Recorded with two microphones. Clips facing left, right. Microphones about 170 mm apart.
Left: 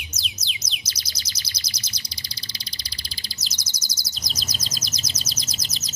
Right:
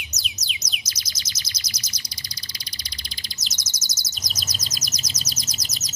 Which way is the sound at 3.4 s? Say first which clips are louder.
Even; 30° left (ahead or behind).